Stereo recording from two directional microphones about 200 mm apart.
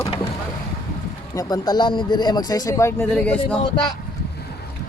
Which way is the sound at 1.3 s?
20° left (ahead or behind).